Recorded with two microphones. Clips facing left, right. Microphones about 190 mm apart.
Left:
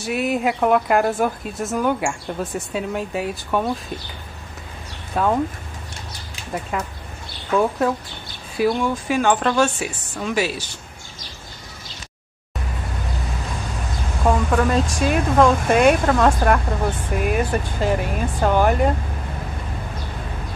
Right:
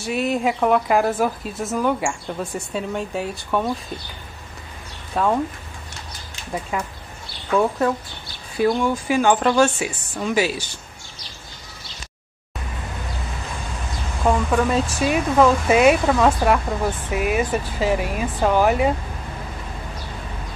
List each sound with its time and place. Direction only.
0.0 s speech: centre (ahead or behind)
5.1 s speech: centre (ahead or behind)
6.7 s speech: centre (ahead or behind)
14.2 s speech: centre (ahead or behind)